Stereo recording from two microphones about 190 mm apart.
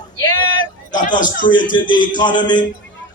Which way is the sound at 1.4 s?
25° left (ahead or behind).